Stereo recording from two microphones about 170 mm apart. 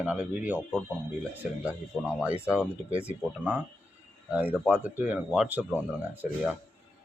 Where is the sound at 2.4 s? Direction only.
5° right (ahead or behind).